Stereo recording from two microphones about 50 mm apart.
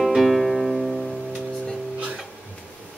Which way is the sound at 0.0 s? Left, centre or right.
Centre.